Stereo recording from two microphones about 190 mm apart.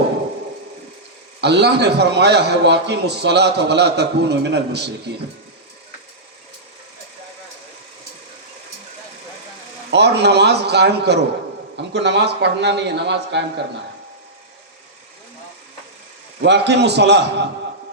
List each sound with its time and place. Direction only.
1.4 s a man's voice: 60° right (ahead or behind)
9.9 s a man's voice: 60° right (ahead or behind)
16.4 s a man's voice: 65° right (ahead or behind)